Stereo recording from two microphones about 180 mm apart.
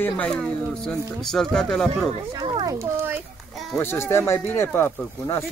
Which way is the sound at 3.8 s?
15° left (ahead or behind).